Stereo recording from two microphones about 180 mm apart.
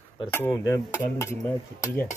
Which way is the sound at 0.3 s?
15° left (ahead or behind).